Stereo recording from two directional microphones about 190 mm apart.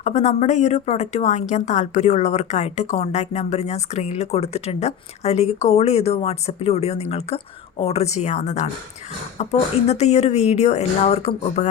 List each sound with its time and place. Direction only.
0.0 s speech: 35° left (ahead or behind)